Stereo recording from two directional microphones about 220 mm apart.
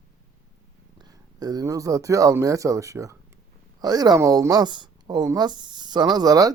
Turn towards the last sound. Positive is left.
turn(degrees=-15)  # may be behind; listen again after turning